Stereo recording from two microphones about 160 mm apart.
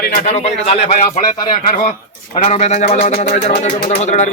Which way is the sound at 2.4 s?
40° left (ahead or behind).